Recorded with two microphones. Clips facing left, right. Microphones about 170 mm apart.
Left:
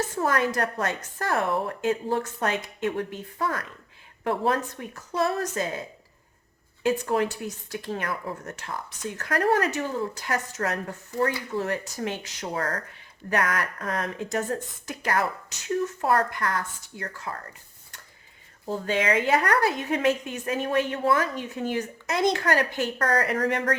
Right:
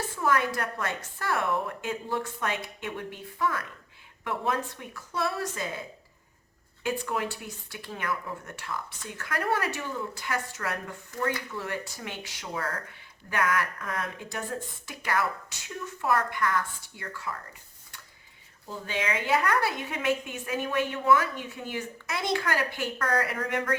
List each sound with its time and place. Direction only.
0.2 s a woman's voice: 40° left (ahead or behind)
6.8 s a woman's voice: 40° left (ahead or behind)
18.6 s a woman's voice: 40° left (ahead or behind)